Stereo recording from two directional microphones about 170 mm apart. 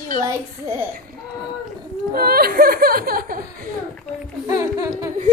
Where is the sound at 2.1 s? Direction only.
60° right (ahead or behind).